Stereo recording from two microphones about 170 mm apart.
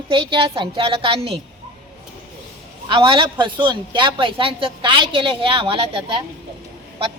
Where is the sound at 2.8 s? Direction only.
30° right (ahead or behind).